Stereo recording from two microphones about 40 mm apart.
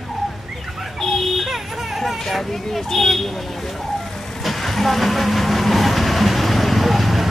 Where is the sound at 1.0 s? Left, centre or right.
Centre.